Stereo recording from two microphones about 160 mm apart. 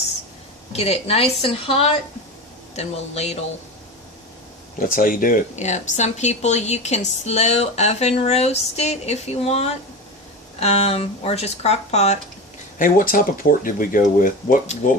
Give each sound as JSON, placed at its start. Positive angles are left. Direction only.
{"t": 0.7, "sound": "speech", "side_deg": 40}
{"t": 4.9, "sound": "speech", "side_deg": 60}
{"t": 12.8, "sound": "speech", "side_deg": 60}